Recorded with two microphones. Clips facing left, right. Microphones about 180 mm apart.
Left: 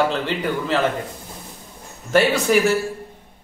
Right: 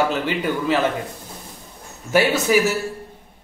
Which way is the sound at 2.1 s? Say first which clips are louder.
Left 1 dB; 5° right (ahead or behind).